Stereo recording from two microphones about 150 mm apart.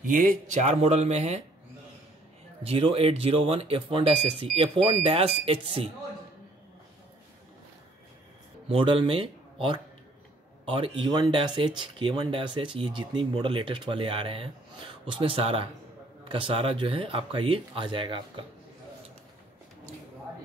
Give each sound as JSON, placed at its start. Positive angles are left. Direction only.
{"t": 0.0, "sound": "speech", "side_deg": -60}
{"t": 2.6, "sound": "speech", "side_deg": -40}
{"t": 8.6, "sound": "speech", "side_deg": -35}